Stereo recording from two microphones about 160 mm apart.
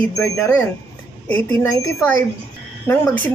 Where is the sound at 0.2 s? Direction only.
15° left (ahead or behind).